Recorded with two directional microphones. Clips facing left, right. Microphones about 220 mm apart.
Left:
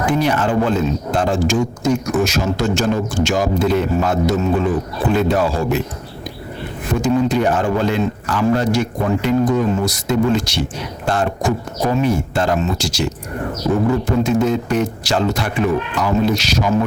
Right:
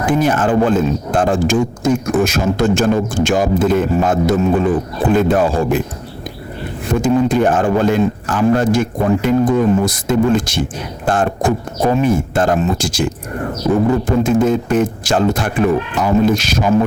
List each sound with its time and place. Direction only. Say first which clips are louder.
0.0 s speech: right 2 dB; 50° right (ahead or behind)
7.0 s speech: right 2 dB; 50° right (ahead or behind)
14.3 s speech: right 3 dB; 50° right (ahead or behind)